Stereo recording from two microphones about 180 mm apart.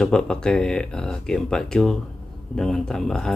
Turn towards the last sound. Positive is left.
turn(degrees=5)  # may be behind; listen again after turning